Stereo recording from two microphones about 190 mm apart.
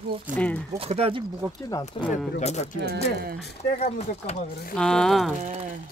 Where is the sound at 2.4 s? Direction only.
35° left (ahead or behind).